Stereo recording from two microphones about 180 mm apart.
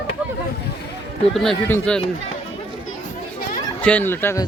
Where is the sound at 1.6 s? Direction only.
10° left (ahead or behind).